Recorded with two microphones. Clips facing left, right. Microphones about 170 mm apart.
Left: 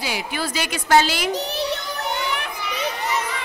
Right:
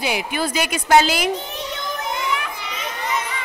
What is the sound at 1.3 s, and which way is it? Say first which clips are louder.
Child singing: left 4 dB; 80° left.